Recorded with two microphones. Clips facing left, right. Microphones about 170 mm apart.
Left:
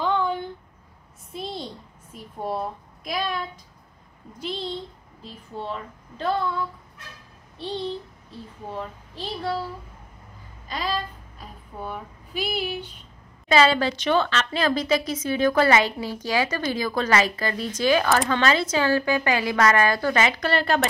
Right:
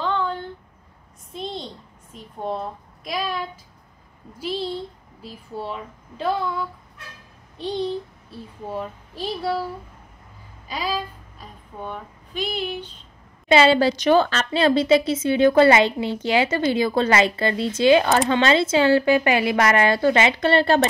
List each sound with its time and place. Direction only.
0.0 s a sound: 15° left (ahead or behind)
2.1 s a woman's voice: 10° left (ahead or behind); by 6.3 s 10° right (ahead or behind)
7.5 s a child's voice: 15° right (ahead or behind)
10.7 s a sound: 10° right (ahead or behind)
11.4 s speech: 5° left (ahead or behind)
13.5 s a woman's voice: 30° right (ahead or behind)